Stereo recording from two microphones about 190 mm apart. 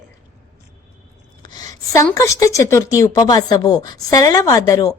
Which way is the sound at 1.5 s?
20° left (ahead or behind).